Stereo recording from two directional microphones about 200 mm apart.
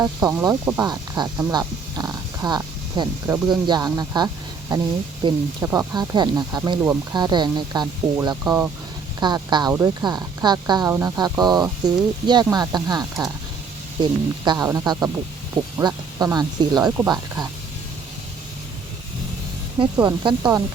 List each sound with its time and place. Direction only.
0.0 s speech: 15° right (ahead or behind)
20.2 s speech: 20° right (ahead or behind)